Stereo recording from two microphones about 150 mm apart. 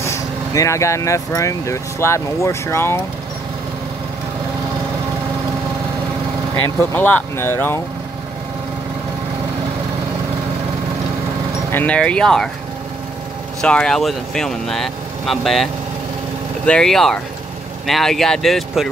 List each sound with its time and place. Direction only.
0.0 s speech: 20° left (ahead or behind)
6.8 s speech: 15° left (ahead or behind)
11.7 s speech: 10° left (ahead or behind)
13.6 s speech: 5° left (ahead or behind)